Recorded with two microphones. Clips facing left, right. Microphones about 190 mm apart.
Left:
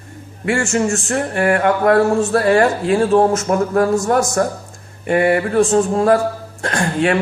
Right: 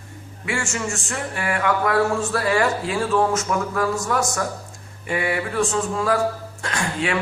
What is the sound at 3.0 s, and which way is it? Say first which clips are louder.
Speech: left 6 dB; 35° left (ahead or behind).